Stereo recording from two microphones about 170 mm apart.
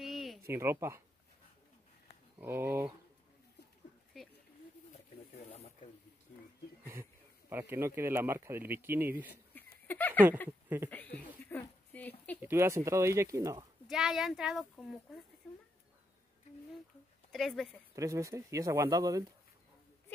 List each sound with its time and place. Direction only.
0.0 s a sound: centre (ahead or behind)
0.5 s speech: 15° right (ahead or behind)
2.3 s speech: 15° right (ahead or behind)
4.1 s speech: centre (ahead or behind)
5.3 s snake: 40° left (ahead or behind)
6.9 s speech: 15° right (ahead or behind)
9.5 s a sound: 10° left (ahead or behind)
10.9 s speech: 10° left (ahead or behind)
12.4 s speech: 15° right (ahead or behind)
13.8 s speech: centre (ahead or behind)
17.3 s speech: centre (ahead or behind)
17.9 s speech: 20° right (ahead or behind)